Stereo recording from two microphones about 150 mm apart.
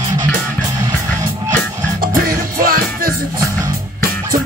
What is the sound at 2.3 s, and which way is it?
Music, 70° right (ahead or behind).